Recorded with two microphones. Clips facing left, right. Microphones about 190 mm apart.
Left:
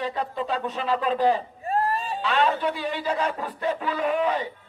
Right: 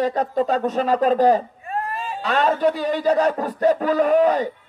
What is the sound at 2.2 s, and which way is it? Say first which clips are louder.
A man's voice: right 5 dB; 45° right (ahead or behind).